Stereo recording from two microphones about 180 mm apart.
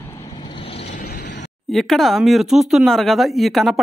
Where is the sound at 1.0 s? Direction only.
55° left (ahead or behind).